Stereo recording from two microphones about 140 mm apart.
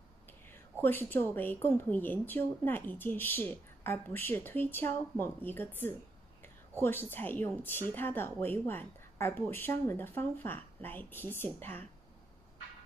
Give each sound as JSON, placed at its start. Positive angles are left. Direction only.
{"t": 0.3, "sound": "a woman's voice", "side_deg": 15}